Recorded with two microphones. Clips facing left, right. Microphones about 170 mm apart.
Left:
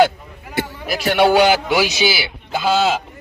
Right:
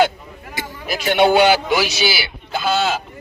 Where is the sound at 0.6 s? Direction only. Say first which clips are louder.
Left 7 dB; 65° left (ahead or behind).